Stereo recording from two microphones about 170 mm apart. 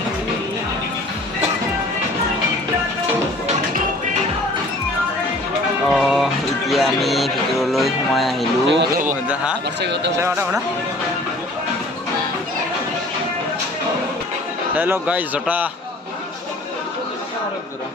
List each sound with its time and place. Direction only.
5.9 s music: centre (ahead or behind)
6.7 s speech: centre (ahead or behind)
8.6 s speech: 90° right
9.3 s a man's voice: 5° right (ahead or behind)
9.8 s speech: 90° right
10.2 s a man's voice: 15° right (ahead or behind)
14.8 s a man's voice: 10° right (ahead or behind)